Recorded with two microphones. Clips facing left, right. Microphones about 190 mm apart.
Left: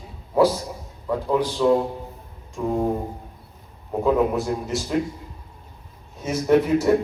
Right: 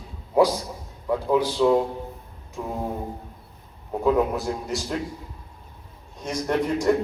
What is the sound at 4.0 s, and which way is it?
Speech, centre (ahead or behind).